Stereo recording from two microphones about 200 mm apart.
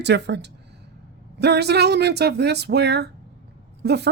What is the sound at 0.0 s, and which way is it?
Speech, 60° right (ahead or behind).